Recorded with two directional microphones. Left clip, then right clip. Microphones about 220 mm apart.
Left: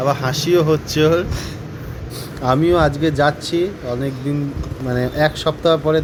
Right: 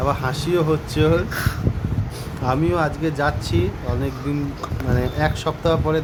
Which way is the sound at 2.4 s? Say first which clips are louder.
Left 6 dB; 20° left (ahead or behind).